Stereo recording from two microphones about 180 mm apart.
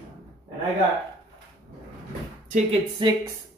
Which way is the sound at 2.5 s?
30° right (ahead or behind).